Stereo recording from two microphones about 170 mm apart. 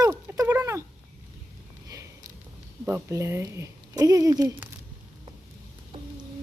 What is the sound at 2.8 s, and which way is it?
Speech, 15° right (ahead or behind).